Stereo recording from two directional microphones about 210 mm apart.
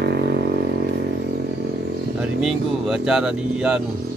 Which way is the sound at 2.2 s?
5° right (ahead or behind).